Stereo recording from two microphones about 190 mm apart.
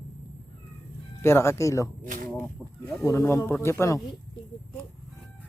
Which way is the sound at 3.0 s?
15° left (ahead or behind).